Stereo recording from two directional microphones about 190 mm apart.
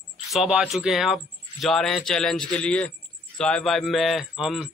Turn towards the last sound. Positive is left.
turn(degrees=0)  # may be behind; listen again after turning